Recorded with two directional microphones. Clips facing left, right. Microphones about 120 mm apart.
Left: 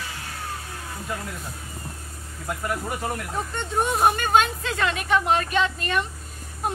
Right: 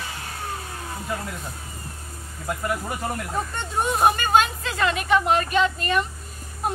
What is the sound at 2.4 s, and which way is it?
Speech, centre (ahead or behind).